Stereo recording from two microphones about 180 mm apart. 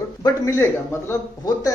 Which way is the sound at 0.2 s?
15° left (ahead or behind).